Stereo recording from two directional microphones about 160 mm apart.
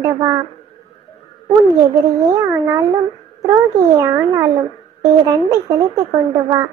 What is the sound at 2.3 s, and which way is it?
Speech, 20° right (ahead or behind).